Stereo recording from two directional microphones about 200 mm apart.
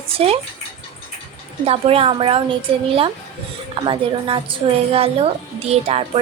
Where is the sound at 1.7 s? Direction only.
30° right (ahead or behind).